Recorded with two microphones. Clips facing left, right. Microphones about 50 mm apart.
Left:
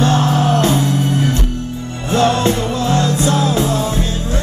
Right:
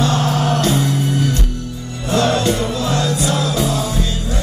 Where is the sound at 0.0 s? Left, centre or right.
Left.